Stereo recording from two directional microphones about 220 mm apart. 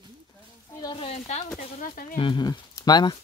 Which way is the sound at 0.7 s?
20° left (ahead or behind).